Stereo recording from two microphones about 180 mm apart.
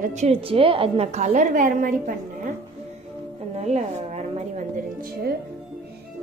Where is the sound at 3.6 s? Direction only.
40° right (ahead or behind).